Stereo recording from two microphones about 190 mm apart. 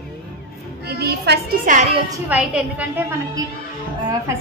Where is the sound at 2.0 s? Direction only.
10° right (ahead or behind).